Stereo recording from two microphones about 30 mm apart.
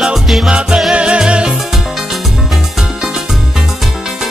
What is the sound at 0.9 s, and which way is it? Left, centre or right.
Music, right.